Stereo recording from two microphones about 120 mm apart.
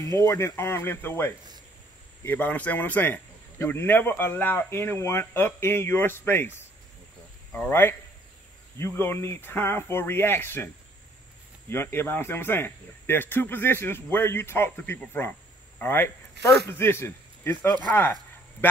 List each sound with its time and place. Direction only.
0.2 s speech: 20° left (ahead or behind)
7.5 s speech: 15° left (ahead or behind)
11.7 s speech: 20° left (ahead or behind)